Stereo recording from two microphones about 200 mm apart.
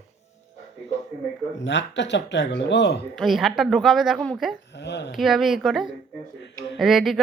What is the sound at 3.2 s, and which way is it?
A woman's voice, centre (ahead or behind).